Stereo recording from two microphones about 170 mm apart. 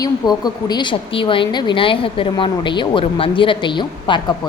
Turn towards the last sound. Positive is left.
turn(degrees=25)  # may be behind; listen again after turning